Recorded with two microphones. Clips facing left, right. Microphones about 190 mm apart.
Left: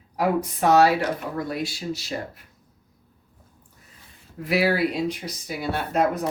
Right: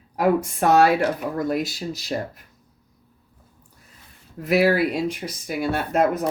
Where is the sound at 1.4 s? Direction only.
45° right (ahead or behind).